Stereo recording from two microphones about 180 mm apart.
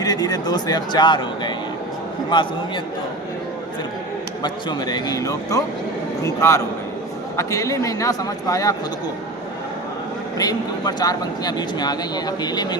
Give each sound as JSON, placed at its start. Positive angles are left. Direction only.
{"t": 0.0, "sound": "speech", "side_deg": 20}
{"t": 4.4, "sound": "a man's voice", "side_deg": 25}
{"t": 10.3, "sound": "speech", "side_deg": 20}